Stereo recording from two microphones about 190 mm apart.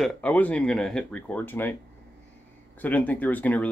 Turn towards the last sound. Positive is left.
turn(degrees=10)  # may be behind; listen again after turning